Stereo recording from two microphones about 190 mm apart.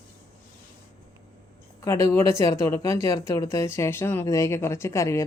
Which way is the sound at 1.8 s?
15° left (ahead or behind).